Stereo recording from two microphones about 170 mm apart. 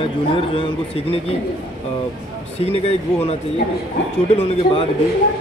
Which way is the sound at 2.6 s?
35° left (ahead or behind).